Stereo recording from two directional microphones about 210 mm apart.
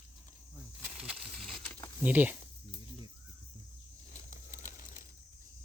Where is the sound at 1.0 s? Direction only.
Centre (ahead or behind).